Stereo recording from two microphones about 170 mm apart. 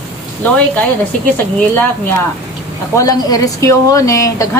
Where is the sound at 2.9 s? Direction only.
20° left (ahead or behind).